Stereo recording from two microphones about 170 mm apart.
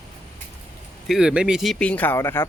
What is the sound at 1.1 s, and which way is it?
Speech, 5° right (ahead or behind).